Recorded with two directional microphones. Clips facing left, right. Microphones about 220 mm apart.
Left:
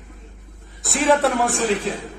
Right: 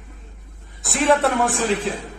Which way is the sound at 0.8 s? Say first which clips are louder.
Even; centre (ahead or behind).